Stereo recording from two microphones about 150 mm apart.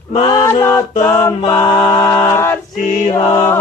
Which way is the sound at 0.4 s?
20° left (ahead or behind).